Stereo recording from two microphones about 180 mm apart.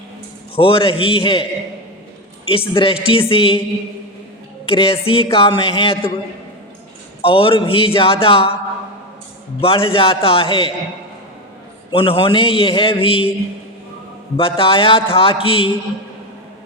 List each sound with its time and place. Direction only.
0.5 s a man's voice: 30° left (ahead or behind)
2.5 s a man's voice: 30° left (ahead or behind)
4.6 s a man's voice: 30° left (ahead or behind)
7.2 s a man's voice: 30° left (ahead or behind)
9.6 s a man's voice: 30° left (ahead or behind)
11.9 s a man's voice: 30° left (ahead or behind)
14.3 s a man's voice: 30° left (ahead or behind)